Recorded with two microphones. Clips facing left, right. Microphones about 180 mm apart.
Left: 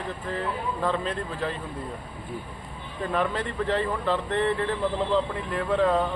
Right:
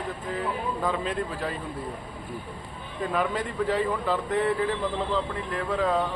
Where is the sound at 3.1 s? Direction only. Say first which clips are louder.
Left 1 dB; 5° right (ahead or behind).